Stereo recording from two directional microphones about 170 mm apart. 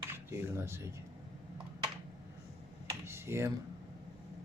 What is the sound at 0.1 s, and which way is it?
Speech, 15° right (ahead or behind).